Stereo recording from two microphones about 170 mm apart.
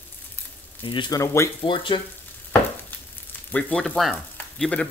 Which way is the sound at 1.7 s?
30° left (ahead or behind).